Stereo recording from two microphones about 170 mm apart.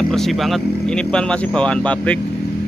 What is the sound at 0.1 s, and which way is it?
Speech, centre (ahead or behind).